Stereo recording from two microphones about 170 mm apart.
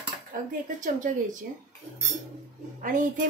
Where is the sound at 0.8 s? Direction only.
50° right (ahead or behind).